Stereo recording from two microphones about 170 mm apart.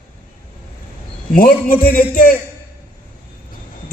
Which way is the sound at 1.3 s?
55° left (ahead or behind).